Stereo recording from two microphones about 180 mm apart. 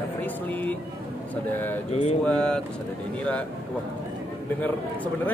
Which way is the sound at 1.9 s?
35° left (ahead or behind).